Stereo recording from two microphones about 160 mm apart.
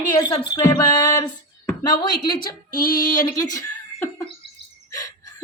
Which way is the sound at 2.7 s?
60° left (ahead or behind).